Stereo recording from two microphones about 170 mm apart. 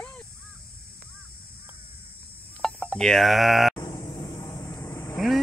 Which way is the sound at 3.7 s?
20° left (ahead or behind).